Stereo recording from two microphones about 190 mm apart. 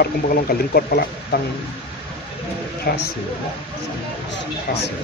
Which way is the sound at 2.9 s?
55° left (ahead or behind).